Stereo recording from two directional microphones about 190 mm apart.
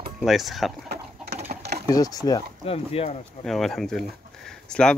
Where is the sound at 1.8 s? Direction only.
20° left (ahead or behind).